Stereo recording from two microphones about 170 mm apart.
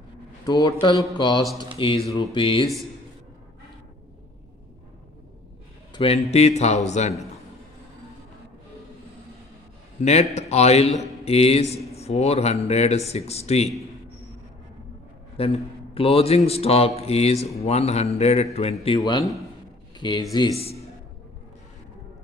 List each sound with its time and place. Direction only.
0.5 s a man's voice: 25° left (ahead or behind)
5.9 s a man's voice: 35° left (ahead or behind)
10.3 s a man's voice: 40° left (ahead or behind)
15.3 s a man's voice: 35° left (ahead or behind)
18.9 s a man's voice: 25° left (ahead or behind)